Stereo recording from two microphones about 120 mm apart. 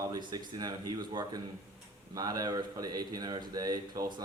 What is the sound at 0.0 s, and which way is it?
Speech, 35° right (ahead or behind).